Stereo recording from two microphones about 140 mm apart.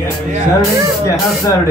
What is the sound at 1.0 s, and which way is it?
Speech, 25° left (ahead or behind).